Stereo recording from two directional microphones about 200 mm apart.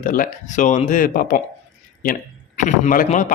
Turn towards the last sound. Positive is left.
turn(degrees=40)  # may be behind; listen again after turning